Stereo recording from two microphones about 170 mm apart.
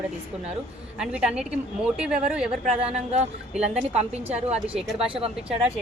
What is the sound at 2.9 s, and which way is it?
Speech, 40° right (ahead or behind).